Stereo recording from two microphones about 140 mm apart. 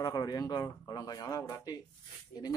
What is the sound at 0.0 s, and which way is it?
Speech, 30° left (ahead or behind).